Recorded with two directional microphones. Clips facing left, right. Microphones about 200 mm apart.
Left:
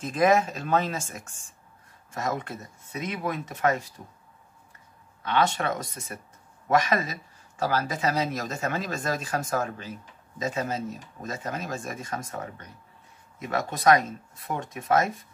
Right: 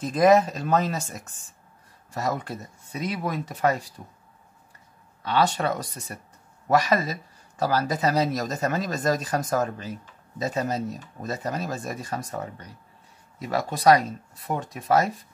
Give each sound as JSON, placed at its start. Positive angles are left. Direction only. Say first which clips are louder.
{"t": 0.0, "sound": "speech", "louder": "right 4 dB", "side_deg": -35}
{"t": 5.2, "sound": "speech", "louder": "right 2 dB", "side_deg": -35}